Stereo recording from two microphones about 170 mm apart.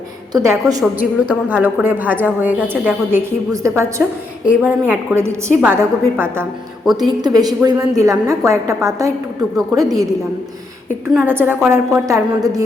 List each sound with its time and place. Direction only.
0.3 s a woman's voice: 20° right (ahead or behind)
1.3 s a woman's voice: 5° right (ahead or behind)
7.2 s a woman's voice: 25° right (ahead or behind)
11.3 s a woman's voice: 10° right (ahead or behind)